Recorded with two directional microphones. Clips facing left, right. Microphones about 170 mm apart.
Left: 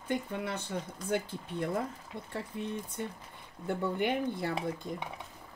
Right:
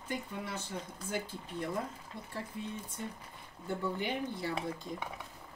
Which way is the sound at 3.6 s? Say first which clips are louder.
Left 4 dB; 55° left (ahead or behind).